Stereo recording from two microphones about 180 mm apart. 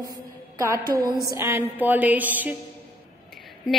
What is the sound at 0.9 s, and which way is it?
Speech, 20° right (ahead or behind).